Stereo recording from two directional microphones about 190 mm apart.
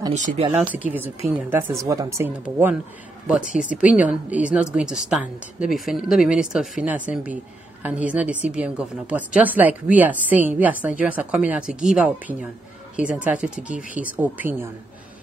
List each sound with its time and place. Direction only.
0.1 s speech: 40° right (ahead or behind)
0.5 s a woman's voice: 10° right (ahead or behind)
3.7 s a woman's voice: 5° right (ahead or behind)